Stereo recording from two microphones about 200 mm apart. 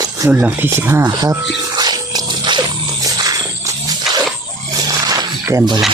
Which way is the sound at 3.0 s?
20° right (ahead or behind).